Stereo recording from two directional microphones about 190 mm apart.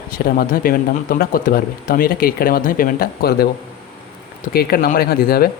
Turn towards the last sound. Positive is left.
turn(degrees=55)  # may be behind; listen again after turning